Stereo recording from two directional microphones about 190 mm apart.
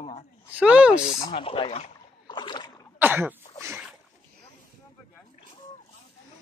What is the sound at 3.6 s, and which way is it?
Boat, 5° right (ahead or behind).